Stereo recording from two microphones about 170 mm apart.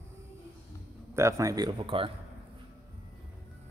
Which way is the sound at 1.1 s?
15° right (ahead or behind).